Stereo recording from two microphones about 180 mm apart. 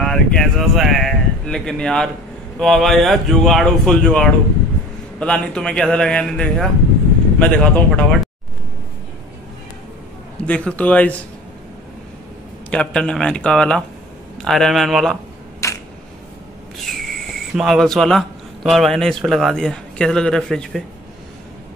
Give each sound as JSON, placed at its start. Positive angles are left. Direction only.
{"t": 0.0, "sound": "speech", "side_deg": 5}
{"t": 10.4, "sound": "speech", "side_deg": 5}
{"t": 12.6, "sound": "speech", "side_deg": 5}
{"t": 15.6, "sound": "camera", "side_deg": 15}
{"t": 16.7, "sound": "speech", "side_deg": 0}